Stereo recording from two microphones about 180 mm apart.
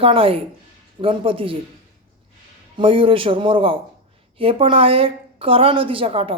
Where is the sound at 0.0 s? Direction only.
30° right (ahead or behind).